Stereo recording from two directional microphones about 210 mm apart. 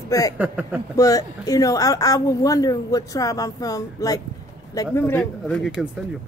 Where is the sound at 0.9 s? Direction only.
15° left (ahead or behind); by 5.9 s centre (ahead or behind).